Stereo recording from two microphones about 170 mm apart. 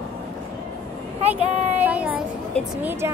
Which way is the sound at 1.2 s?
40° right (ahead or behind).